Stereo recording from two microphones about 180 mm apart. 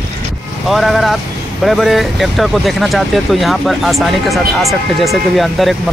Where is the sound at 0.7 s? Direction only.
Centre (ahead or behind).